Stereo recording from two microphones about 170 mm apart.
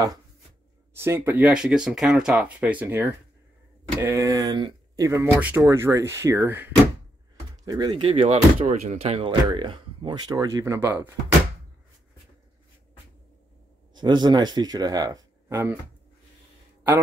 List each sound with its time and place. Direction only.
0.9 s speech: 15° right (ahead or behind)
7.6 s speech: 25° right (ahead or behind)
8.1 s speech: 35° right (ahead or behind); by 11.1 s 15° right (ahead or behind)
13.9 s speech: 25° right (ahead or behind)